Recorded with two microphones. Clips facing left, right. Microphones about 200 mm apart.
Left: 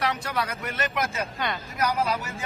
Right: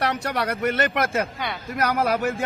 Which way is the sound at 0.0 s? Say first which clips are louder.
Right 3 dB; 65° right (ahead or behind).